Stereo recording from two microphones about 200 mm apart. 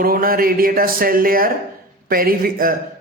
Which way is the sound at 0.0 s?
45° right (ahead or behind).